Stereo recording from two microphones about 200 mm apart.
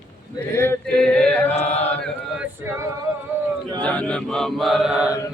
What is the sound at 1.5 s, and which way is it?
Chant, 30° left (ahead or behind).